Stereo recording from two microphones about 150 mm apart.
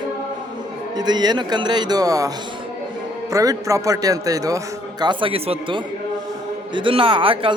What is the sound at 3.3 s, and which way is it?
A man's voice, 20° right (ahead or behind).